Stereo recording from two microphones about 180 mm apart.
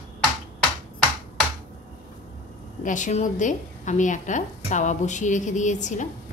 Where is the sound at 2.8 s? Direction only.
45° left (ahead or behind).